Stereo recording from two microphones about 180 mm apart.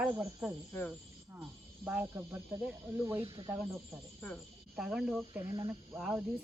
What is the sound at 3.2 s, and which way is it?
Speech, 30° right (ahead or behind).